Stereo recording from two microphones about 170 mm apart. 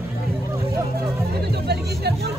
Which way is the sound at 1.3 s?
70° right (ahead or behind).